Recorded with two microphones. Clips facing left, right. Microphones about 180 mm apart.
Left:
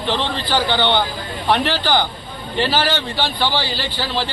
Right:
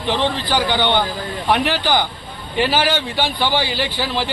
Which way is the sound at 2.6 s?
15° right (ahead or behind).